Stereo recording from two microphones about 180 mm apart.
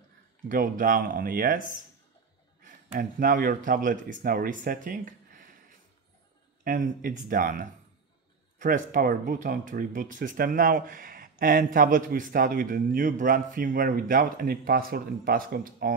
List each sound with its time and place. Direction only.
0.5 s speech: 50° right (ahead or behind)
2.6 s speech: 50° right (ahead or behind)